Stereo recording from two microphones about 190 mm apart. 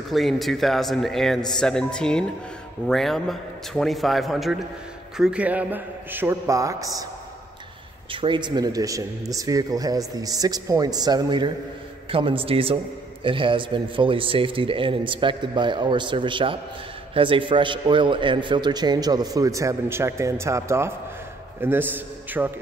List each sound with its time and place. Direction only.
0.1 s a man's voice: centre (ahead or behind); by 7.1 s 20° right (ahead or behind)
8.1 s a man's voice: 25° right (ahead or behind); by 22.5 s 10° right (ahead or behind)